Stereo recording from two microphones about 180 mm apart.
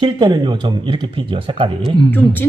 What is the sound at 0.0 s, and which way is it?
Speech, 25° right (ahead or behind).